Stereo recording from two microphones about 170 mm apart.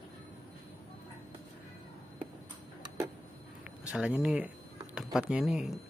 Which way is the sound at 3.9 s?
5° right (ahead or behind).